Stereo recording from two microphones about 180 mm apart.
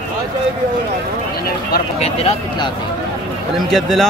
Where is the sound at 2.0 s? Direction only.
35° left (ahead or behind).